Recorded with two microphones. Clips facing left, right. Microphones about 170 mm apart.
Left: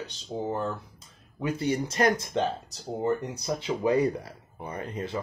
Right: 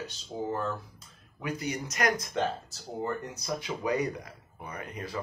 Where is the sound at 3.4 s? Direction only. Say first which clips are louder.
Left 5 dB; 25° left (ahead or behind).